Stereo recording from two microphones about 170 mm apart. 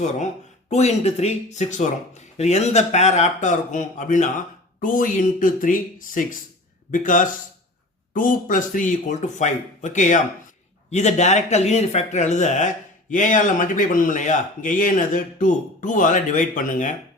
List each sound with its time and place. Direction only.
0.7 s speech: 40° left (ahead or behind)